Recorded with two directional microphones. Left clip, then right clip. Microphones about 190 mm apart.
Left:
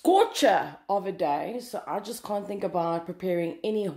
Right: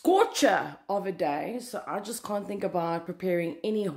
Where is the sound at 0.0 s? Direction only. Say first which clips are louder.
Left 2 dB; 10° right (ahead or behind).